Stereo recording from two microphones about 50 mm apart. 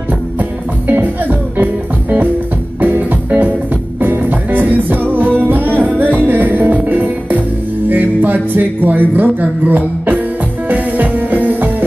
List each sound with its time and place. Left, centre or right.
0.4 s music: right